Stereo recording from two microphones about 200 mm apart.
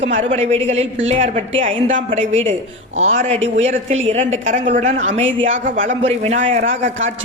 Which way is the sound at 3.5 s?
35° right (ahead or behind).